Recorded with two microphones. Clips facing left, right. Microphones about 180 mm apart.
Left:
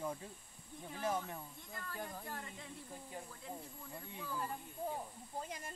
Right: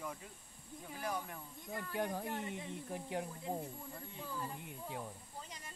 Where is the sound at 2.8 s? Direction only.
85° right.